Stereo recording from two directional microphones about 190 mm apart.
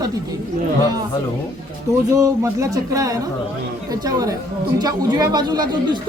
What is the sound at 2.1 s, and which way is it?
Speech, 15° right (ahead or behind).